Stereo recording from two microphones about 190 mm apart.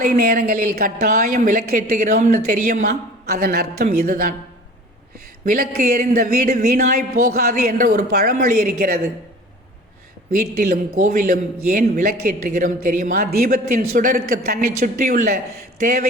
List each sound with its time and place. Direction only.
0.0 s a woman's voice: 50° right (ahead or behind)
5.5 s speech: 50° right (ahead or behind)
10.3 s speech: 50° right (ahead or behind)